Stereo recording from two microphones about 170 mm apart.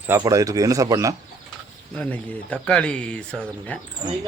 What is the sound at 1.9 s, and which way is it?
Speech, 5° left (ahead or behind).